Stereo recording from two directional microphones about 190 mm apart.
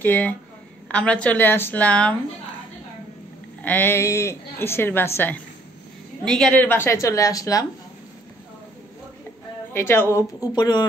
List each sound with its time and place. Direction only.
0.0 s a woman's voice: 10° left (ahead or behind)
3.6 s a woman's voice: 10° left (ahead or behind)
9.7 s a woman's voice: 10° left (ahead or behind)